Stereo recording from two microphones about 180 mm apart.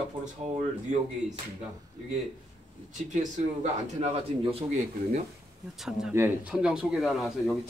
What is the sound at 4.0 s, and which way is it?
Speech, 30° right (ahead or behind).